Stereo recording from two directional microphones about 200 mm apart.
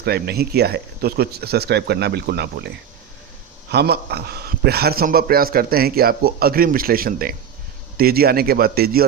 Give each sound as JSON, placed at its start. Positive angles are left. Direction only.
{"t": 0.0, "sound": "a man's voice", "side_deg": -50}